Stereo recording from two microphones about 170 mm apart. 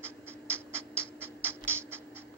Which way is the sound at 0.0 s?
15° right (ahead or behind).